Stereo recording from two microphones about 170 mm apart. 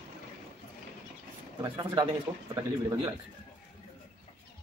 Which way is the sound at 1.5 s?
25° right (ahead or behind).